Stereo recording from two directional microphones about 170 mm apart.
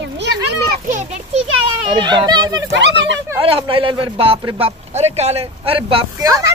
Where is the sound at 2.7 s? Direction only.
90° right.